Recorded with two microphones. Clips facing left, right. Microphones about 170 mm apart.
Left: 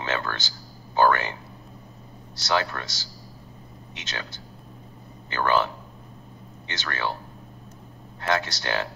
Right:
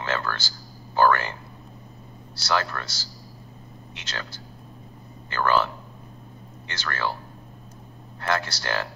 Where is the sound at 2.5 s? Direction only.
20° left (ahead or behind).